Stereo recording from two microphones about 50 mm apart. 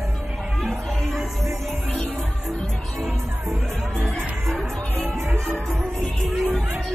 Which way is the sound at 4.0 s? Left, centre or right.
Centre.